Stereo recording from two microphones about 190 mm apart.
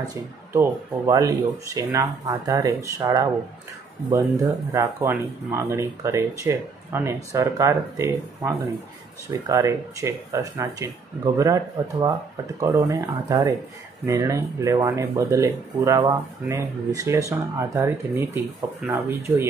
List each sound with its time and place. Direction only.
0.1 s speech: 15° right (ahead or behind)
4.7 s speech: 15° right (ahead or behind)